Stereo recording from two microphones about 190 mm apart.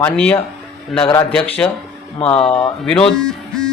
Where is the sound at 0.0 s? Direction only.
5° left (ahead or behind).